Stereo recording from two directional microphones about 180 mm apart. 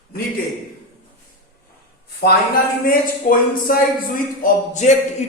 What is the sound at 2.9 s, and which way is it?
Speech, 50° left (ahead or behind).